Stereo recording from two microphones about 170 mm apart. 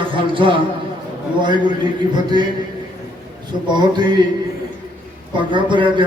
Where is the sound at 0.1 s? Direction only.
30° right (ahead or behind).